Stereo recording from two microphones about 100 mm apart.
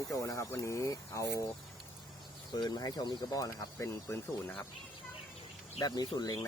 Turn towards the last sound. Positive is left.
turn(degrees=40)  # may be behind; listen again after turning